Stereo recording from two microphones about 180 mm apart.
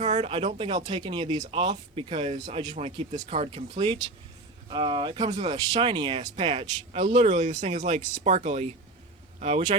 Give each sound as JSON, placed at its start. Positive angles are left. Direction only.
{"t": 0.0, "sound": "speech", "side_deg": -35}